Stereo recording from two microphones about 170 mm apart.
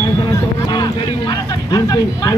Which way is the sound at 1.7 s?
20° left (ahead or behind).